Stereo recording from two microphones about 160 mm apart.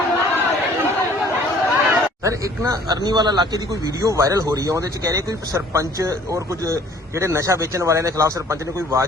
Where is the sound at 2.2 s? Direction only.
20° right (ahead or behind).